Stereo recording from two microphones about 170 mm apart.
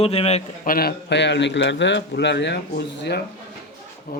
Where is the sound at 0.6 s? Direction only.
60° left (ahead or behind); by 3.2 s 80° left.